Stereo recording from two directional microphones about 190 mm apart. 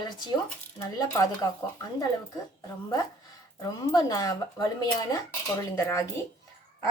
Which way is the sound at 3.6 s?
20° left (ahead or behind).